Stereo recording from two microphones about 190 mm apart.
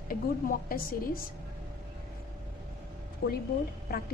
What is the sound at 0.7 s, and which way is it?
Speech, 50° left (ahead or behind).